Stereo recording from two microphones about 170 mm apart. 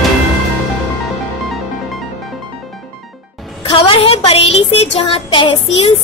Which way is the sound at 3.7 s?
30° left (ahead or behind).